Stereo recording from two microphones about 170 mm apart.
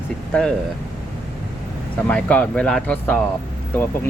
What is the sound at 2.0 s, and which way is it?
Speech, 5° left (ahead or behind).